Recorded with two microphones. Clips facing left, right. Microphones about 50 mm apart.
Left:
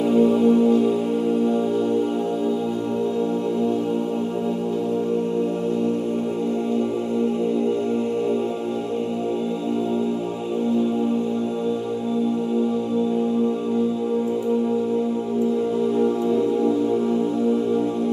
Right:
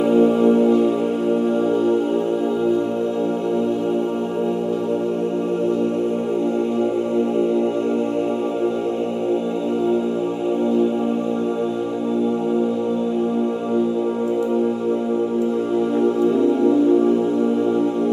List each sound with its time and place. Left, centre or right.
0.0 s music: right